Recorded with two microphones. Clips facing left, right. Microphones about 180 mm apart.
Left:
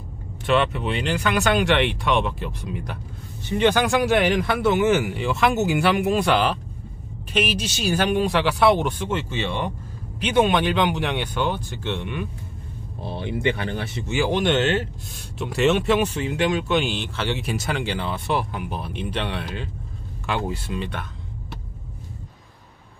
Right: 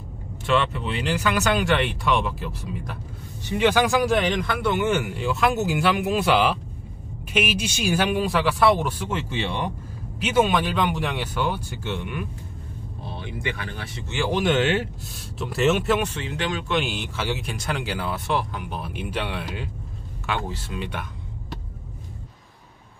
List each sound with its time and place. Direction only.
0.5 s speech: centre (ahead or behind)
9.1 s speech: 10° right (ahead or behind)
13.1 s speech: 25° left (ahead or behind)
14.0 s speech: 10° left (ahead or behind)
14.3 s speech: 10° right (ahead or behind)
16.1 s speech: 10° left (ahead or behind)
16.7 s speech: 5° right (ahead or behind)
17.4 s speech: 5° left (ahead or behind)
20.2 s speech: 5° left (ahead or behind)
20.7 s speech: 10° right (ahead or behind)